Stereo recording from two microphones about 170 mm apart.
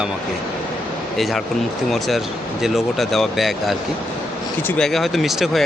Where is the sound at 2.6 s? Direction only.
Centre (ahead or behind).